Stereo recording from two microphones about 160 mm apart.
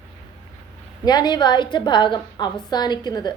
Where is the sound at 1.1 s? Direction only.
25° left (ahead or behind).